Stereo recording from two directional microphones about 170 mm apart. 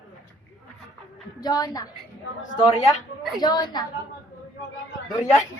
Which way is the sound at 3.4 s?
25° left (ahead or behind).